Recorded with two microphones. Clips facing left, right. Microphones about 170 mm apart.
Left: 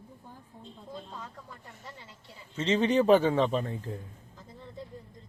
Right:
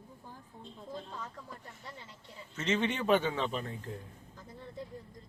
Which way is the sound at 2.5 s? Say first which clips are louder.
Left 7 dB; 30° left (ahead or behind).